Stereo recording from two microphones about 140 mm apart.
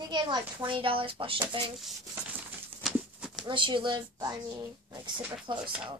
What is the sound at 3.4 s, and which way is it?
Speech, 35° right (ahead or behind).